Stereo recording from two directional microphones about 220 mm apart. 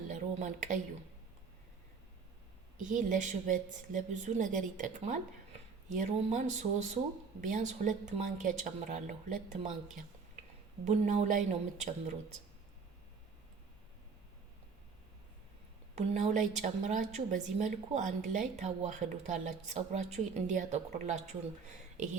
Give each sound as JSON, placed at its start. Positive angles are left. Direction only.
{"t": 0.1, "sound": "a sound", "side_deg": -35}
{"t": 2.7, "sound": "a woman's voice", "side_deg": -35}
{"t": 10.8, "sound": "a woman's voice", "side_deg": -30}
{"t": 16.0, "sound": "a woman's voice", "side_deg": -30}